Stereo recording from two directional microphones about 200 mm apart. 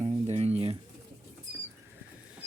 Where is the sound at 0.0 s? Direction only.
30° right (ahead or behind).